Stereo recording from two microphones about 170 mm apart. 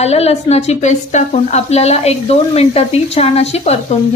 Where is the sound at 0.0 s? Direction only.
40° left (ahead or behind).